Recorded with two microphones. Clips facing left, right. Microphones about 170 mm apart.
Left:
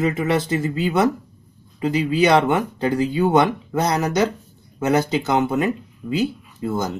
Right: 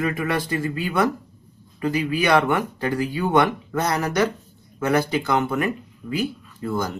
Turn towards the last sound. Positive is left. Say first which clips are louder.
# left 2 dB
turn(degrees=20)  # may be behind; listen again after turning